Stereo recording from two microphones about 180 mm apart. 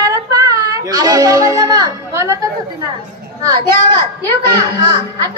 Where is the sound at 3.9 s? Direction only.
25° right (ahead or behind).